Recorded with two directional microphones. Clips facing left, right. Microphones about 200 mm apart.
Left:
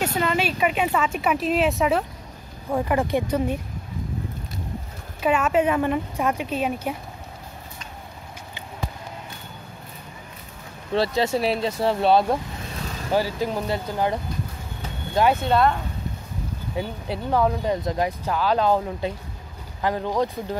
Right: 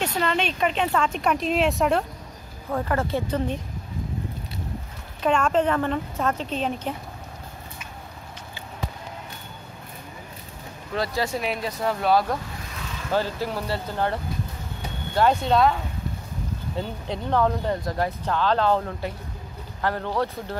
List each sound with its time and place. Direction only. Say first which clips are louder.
0.0 s speech: left 1 dB; 5° left (ahead or behind)
2.7 s speech: left 3 dB; 15° left (ahead or behind)
5.2 s speech: left 1 dB; 5° left (ahead or behind)
11.0 s speech: left 5 dB; 25° left (ahead or behind)
15.4 s speech: even; centre (ahead or behind)